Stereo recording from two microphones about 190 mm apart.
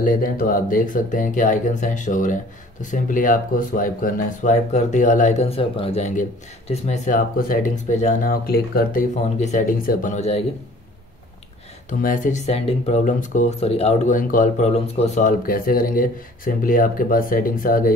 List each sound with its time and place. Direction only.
0.0 s speech: 45° left (ahead or behind)
11.9 s speech: 45° left (ahead or behind)